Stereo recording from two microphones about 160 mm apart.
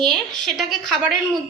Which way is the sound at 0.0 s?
Centre (ahead or behind).